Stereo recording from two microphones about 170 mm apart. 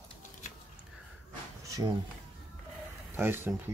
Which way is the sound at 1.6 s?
20° right (ahead or behind).